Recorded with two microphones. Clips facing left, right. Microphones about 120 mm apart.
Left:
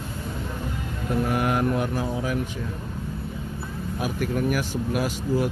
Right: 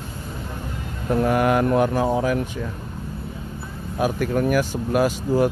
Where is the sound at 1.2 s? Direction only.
70° right (ahead or behind).